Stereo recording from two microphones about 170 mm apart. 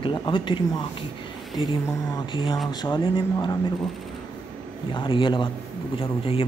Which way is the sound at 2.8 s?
25° left (ahead or behind).